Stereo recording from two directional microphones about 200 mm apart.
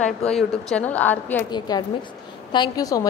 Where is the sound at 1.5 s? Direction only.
20° left (ahead or behind).